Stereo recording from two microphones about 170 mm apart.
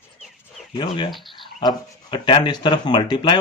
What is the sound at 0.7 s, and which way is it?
Speech, 30° left (ahead or behind).